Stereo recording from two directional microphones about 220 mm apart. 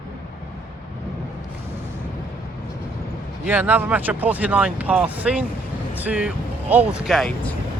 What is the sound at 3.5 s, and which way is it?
Speech, 10° right (ahead or behind).